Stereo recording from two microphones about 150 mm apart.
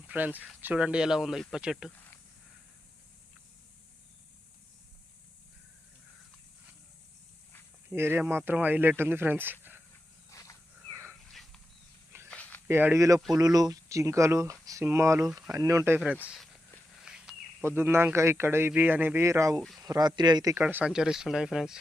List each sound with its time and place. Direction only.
0.1 s speech: 10° right (ahead or behind)
7.9 s a man's voice: 15° right (ahead or behind)
10.2 s wild animals: 20° left (ahead or behind)
12.3 s a sound: 10° left (ahead or behind)
12.6 s a man's voice: 15° right (ahead or behind)
15.3 s speech: centre (ahead or behind)
15.5 s speech: 20° right (ahead or behind)
16.3 s walk: centre (ahead or behind)
17.6 s a man's voice: 15° right (ahead or behind)